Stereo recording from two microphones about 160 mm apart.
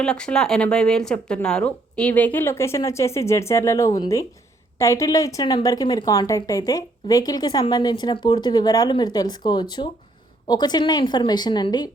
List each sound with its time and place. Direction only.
0.0 s a woman's voice: 5° left (ahead or behind); by 11.9 s 25° left (ahead or behind)